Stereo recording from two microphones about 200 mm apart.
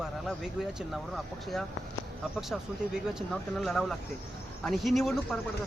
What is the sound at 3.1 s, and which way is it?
Speech, centre (ahead or behind).